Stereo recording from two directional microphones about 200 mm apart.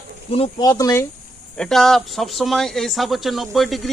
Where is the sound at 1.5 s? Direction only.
5° left (ahead or behind).